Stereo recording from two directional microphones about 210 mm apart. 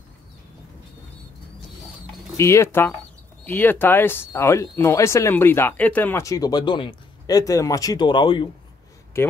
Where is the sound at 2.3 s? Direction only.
15° left (ahead or behind).